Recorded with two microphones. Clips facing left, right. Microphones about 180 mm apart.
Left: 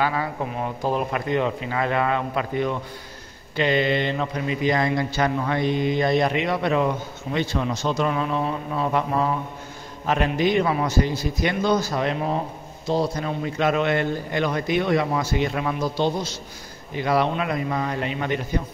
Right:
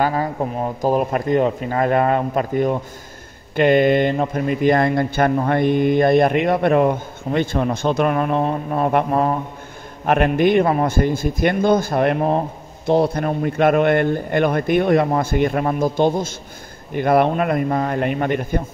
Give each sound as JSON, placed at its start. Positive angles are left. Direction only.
{"t": 0.0, "sound": "a man's voice", "side_deg": -40}